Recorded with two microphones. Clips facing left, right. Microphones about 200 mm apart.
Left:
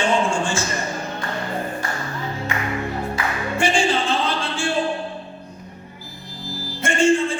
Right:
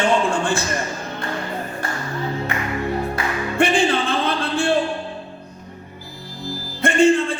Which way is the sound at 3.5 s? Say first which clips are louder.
Right 3 dB; 55° right (ahead or behind).